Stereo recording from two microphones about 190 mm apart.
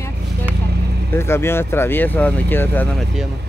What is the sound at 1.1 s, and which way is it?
Speech, 15° left (ahead or behind).